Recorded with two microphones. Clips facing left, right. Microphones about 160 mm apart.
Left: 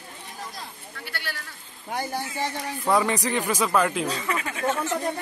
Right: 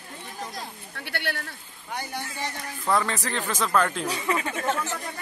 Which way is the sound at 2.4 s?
15° left (ahead or behind).